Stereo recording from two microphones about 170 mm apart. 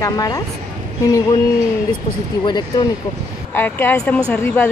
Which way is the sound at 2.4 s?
25° left (ahead or behind).